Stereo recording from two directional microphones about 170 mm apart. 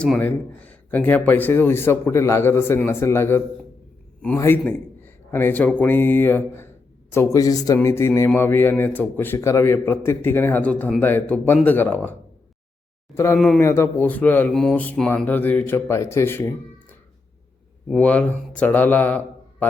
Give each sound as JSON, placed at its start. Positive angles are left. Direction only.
{"t": 0.0, "sound": "a man's voice", "side_deg": 5}
{"t": 13.1, "sound": "a man's voice", "side_deg": 15}
{"t": 17.8, "sound": "speech", "side_deg": 5}